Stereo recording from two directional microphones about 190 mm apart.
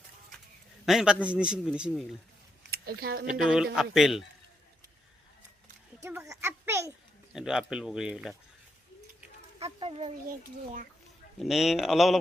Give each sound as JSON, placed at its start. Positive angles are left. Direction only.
{"t": 0.9, "sound": "a man's voice", "side_deg": -5}
{"t": 2.6, "sound": "a sound", "side_deg": -55}
{"t": 3.2, "sound": "a man's voice", "side_deg": -5}
{"t": 6.0, "sound": "a child's voice", "side_deg": -15}
{"t": 7.3, "sound": "a man's voice", "side_deg": -5}
{"t": 9.6, "sound": "speech", "side_deg": -30}
{"t": 11.3, "sound": "a man's voice", "side_deg": 0}